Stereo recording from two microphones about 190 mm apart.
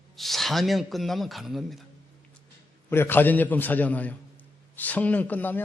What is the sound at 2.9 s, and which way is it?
A man's voice, 10° left (ahead or behind).